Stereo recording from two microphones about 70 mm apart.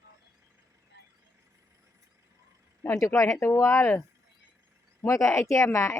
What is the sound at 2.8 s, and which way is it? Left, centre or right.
Speech, left.